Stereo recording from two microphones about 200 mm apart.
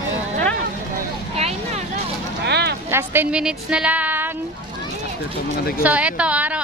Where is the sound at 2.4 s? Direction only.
55° right (ahead or behind).